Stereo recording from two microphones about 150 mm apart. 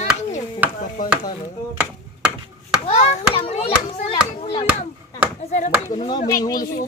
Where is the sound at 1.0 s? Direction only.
65° left (ahead or behind).